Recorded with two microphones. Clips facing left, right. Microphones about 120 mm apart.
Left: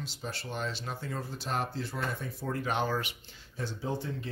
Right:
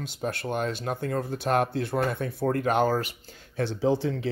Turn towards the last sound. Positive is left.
turn(degrees=-90)